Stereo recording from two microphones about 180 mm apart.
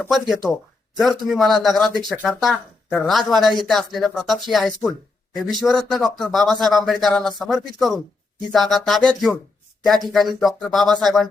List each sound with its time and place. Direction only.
0.0 s speech: centre (ahead or behind)